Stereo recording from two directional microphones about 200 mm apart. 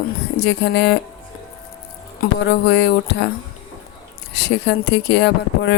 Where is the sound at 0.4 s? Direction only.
60° left (ahead or behind).